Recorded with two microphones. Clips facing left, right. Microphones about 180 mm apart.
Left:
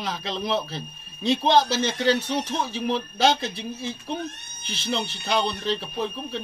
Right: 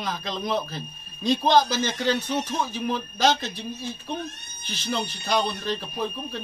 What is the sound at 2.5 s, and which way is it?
Speech, 30° left (ahead or behind).